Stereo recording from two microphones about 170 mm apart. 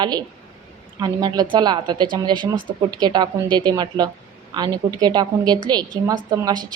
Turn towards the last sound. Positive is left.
turn(degrees=-20)  # may be behind; listen again after turning